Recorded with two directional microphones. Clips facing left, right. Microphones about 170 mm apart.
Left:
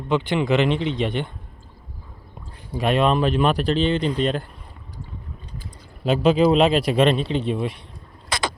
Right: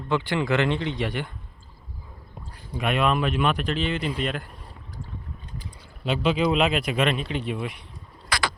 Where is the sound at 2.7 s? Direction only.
30° left (ahead or behind).